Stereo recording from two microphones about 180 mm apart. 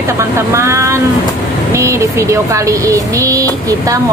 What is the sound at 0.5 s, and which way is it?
Speech, 15° right (ahead or behind).